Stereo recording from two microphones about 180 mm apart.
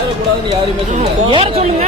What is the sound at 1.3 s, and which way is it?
Speech, 30° right (ahead or behind).